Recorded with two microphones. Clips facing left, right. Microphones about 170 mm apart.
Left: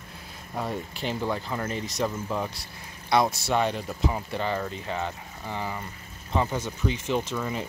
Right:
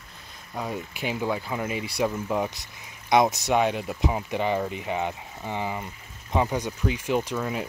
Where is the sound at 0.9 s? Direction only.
10° right (ahead or behind).